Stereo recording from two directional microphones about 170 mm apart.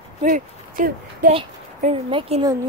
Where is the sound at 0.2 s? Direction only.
55° right (ahead or behind).